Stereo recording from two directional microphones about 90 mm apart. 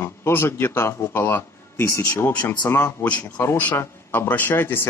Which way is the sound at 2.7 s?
25° left (ahead or behind).